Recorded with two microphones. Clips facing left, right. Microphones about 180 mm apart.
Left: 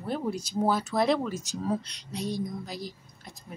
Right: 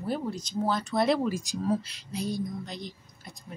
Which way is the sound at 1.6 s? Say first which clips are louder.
Right 2 dB; 5° right (ahead or behind).